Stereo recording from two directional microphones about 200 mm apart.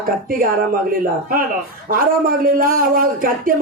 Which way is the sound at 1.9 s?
45° right (ahead or behind).